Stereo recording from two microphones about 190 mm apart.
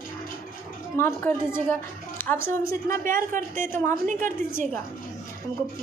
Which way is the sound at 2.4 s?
45° right (ahead or behind).